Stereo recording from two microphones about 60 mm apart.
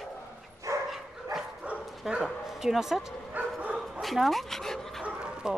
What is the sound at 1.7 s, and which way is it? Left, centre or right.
Bow-wow, centre.